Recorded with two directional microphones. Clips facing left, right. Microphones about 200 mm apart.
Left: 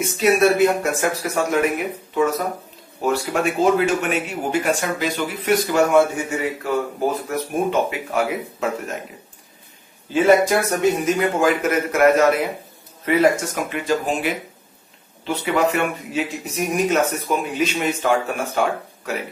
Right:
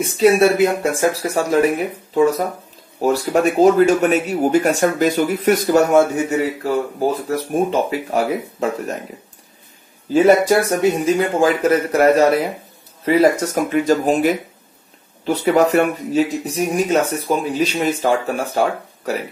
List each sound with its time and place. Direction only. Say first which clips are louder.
0.0 s speech: right 4 dB; 30° right (ahead or behind)
10.1 s speech: right 3 dB; 35° right (ahead or behind)